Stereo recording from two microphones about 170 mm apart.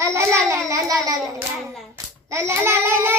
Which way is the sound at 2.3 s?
15° right (ahead or behind).